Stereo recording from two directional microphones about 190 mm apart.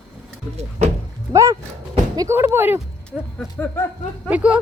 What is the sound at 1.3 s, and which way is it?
Speech, 15° right (ahead or behind).